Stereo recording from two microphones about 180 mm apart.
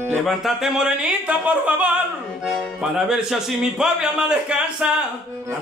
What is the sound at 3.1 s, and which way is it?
A man's voice, centre (ahead or behind).